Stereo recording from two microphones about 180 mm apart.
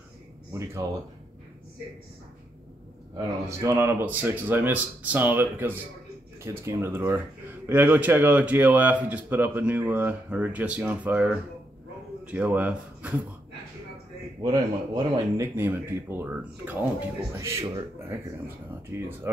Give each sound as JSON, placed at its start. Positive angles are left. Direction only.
{"t": 0.5, "sound": "speech", "side_deg": -15}
{"t": 3.4, "sound": "speech", "side_deg": -15}
{"t": 14.4, "sound": "speech", "side_deg": -20}
{"t": 18.9, "sound": "speech", "side_deg": -10}